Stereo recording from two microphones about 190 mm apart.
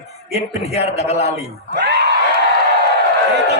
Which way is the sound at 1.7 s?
60° right (ahead or behind).